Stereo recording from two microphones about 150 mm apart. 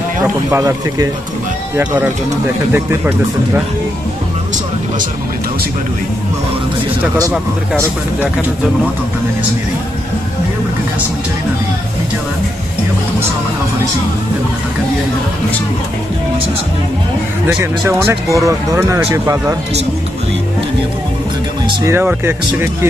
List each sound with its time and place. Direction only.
0.2 s speech: 20° right (ahead or behind)
2.7 s speech: 15° right (ahead or behind)
17.5 s speech: 10° right (ahead or behind)
21.8 s speech: 15° right (ahead or behind)